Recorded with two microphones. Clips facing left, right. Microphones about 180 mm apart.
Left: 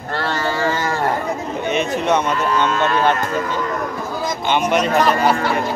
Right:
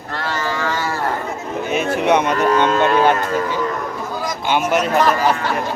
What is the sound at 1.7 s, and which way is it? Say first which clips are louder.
Speech: right 2 dB; 10° right (ahead or behind).